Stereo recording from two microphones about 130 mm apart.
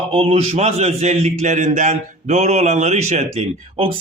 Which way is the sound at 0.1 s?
50° right (ahead or behind).